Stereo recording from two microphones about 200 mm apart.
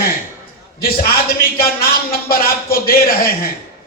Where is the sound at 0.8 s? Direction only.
50° left (ahead or behind).